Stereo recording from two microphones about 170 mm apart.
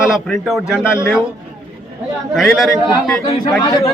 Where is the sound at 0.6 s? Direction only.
15° left (ahead or behind).